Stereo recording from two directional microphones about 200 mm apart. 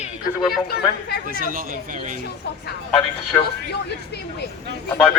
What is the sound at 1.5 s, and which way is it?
Speech, 40° right (ahead or behind).